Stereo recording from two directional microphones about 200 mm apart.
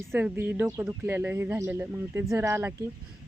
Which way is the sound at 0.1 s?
10° right (ahead or behind).